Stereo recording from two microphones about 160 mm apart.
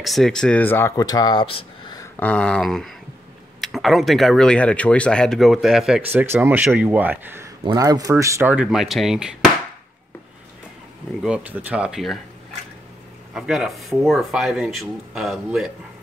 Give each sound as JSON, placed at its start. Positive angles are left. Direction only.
{"t": 0.0, "sound": "speech", "side_deg": 0}
{"t": 2.1, "sound": "speech", "side_deg": 10}
{"t": 6.1, "sound": "speech", "side_deg": -15}
{"t": 11.2, "sound": "speech", "side_deg": -10}
{"t": 13.3, "sound": "speech", "side_deg": -5}